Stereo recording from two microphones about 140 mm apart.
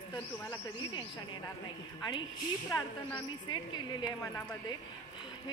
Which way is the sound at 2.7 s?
25° left (ahead or behind).